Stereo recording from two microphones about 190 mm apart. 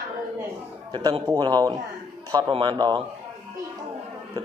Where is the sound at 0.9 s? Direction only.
25° right (ahead or behind).